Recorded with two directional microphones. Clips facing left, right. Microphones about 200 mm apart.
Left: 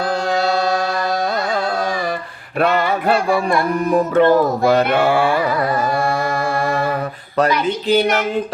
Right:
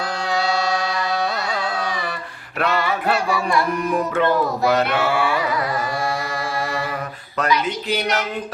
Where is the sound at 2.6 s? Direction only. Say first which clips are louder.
Left 4 dB; 50° left (ahead or behind).